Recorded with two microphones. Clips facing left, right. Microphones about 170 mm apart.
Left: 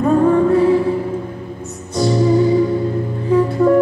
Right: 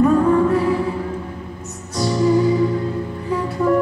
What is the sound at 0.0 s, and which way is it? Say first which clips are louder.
Music: left 1 dB; 30° left (ahead or behind).